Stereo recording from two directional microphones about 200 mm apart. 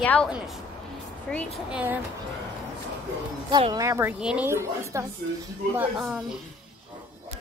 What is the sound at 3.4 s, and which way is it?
A woman's voice, 20° right (ahead or behind).